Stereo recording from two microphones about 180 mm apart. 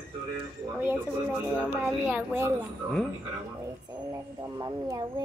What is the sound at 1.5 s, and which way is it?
Speech, 10° left (ahead or behind).